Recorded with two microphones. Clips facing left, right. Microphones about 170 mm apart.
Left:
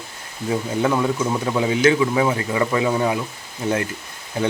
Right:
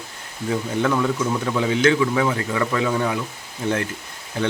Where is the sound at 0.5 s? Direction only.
20° left (ahead or behind).